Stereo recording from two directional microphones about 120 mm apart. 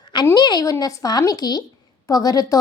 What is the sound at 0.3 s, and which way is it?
A woman's voice, 35° left (ahead or behind).